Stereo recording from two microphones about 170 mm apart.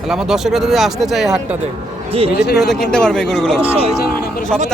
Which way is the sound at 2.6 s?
Centre (ahead or behind).